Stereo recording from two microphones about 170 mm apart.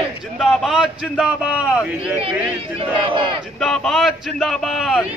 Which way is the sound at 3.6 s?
Centre (ahead or behind).